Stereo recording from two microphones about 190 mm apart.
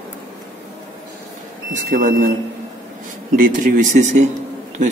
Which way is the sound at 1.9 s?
50° right (ahead or behind).